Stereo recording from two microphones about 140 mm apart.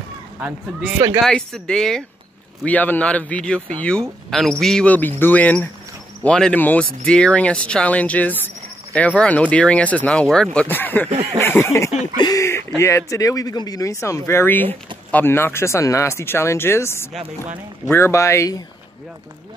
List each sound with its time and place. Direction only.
0.4 s speech: 10° right (ahead or behind)
1.2 s speech: 5° left (ahead or behind)
11.1 s a sound: 50° right (ahead or behind)
11.4 s speech: 15° left (ahead or behind)